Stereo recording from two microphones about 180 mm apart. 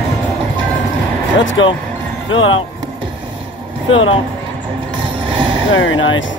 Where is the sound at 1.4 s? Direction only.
90° left.